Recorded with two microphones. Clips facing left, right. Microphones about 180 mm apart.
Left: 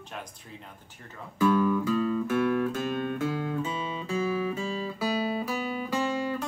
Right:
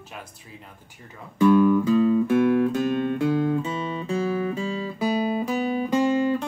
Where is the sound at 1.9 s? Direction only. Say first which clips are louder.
Right 7 dB; 25° right (ahead or behind).